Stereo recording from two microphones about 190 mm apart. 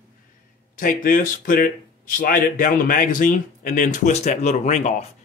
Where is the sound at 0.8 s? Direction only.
45° left (ahead or behind).